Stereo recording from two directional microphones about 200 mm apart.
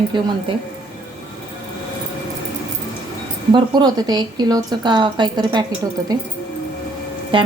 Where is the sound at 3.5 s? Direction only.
20° right (ahead or behind).